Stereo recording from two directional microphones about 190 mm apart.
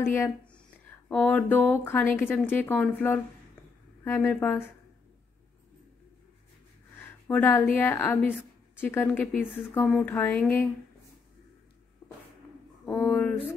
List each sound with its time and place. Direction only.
0.0 s speech: 10° left (ahead or behind)
7.0 s speech: 10° left (ahead or behind)
12.8 s speech: 5° left (ahead or behind)